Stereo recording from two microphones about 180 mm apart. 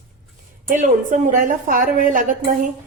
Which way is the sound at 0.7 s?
45° right (ahead or behind).